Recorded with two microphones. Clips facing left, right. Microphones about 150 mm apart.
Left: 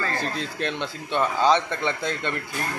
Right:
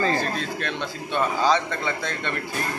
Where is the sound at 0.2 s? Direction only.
20° left (ahead or behind).